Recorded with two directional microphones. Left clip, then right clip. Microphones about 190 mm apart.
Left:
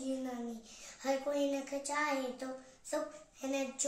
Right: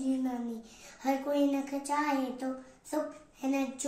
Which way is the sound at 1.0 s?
20° left (ahead or behind).